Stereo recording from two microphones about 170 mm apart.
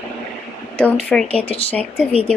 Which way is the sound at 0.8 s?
10° left (ahead or behind).